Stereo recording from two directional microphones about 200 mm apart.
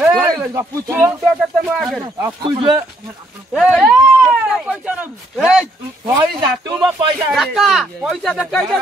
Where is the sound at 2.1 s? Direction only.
15° right (ahead or behind).